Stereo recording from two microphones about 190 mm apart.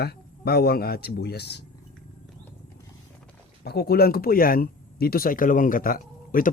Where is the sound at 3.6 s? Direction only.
55° left (ahead or behind).